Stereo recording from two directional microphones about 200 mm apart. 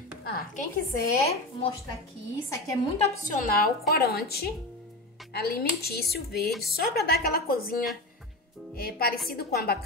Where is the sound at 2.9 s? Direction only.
35° left (ahead or behind).